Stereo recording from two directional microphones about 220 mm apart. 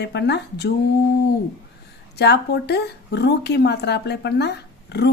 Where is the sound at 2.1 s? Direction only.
50° left (ahead or behind).